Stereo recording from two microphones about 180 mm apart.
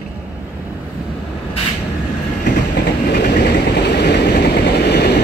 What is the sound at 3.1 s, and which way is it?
Vehicle, 70° left (ahead or behind).